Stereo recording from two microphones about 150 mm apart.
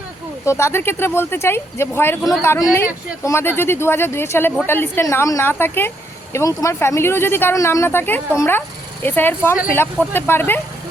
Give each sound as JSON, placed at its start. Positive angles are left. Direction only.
{"t": 0.4, "sound": "speech", "side_deg": 15}